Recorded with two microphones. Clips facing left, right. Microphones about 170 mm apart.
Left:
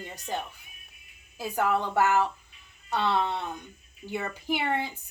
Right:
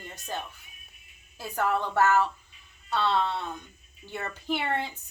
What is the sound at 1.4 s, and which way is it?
A woman's voice, 10° left (ahead or behind).